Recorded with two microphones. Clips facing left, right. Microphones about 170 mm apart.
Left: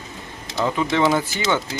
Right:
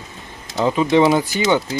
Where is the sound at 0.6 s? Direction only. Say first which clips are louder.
Right 5 dB; 20° right (ahead or behind).